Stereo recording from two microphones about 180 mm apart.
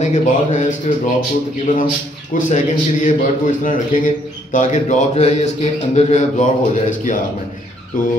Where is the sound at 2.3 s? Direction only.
45° left (ahead or behind).